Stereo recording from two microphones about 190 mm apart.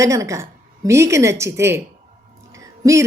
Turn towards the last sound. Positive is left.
turn(degrees=-15)  # may be behind; listen again after turning